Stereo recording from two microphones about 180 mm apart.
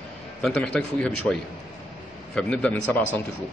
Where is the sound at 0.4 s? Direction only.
5° left (ahead or behind).